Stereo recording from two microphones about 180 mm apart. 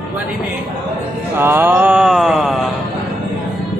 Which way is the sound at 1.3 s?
10° right (ahead or behind).